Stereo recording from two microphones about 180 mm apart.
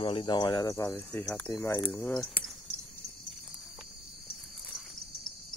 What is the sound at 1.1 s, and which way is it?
Speech, 5° left (ahead or behind).